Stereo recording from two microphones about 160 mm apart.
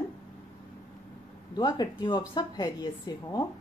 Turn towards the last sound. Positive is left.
turn(degrees=25)  # may be behind; listen again after turning